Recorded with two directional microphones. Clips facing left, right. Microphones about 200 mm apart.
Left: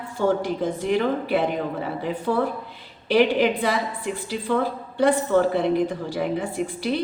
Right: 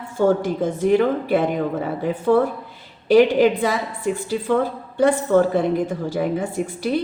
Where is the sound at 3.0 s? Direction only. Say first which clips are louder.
Right 5 dB; 45° right (ahead or behind).